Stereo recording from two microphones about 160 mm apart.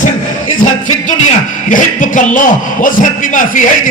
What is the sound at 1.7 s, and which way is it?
A man's voice, 55° left (ahead or behind).